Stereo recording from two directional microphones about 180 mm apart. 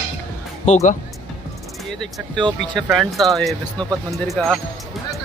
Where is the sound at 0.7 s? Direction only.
40° left (ahead or behind).